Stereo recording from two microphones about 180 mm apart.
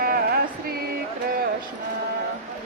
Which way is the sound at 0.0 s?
55° right (ahead or behind).